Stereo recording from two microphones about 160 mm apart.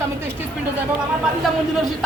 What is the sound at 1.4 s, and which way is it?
Speech, centre (ahead or behind).